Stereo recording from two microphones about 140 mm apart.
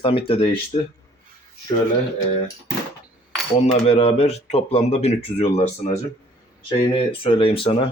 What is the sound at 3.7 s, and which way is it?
Speech, 45° left (ahead or behind).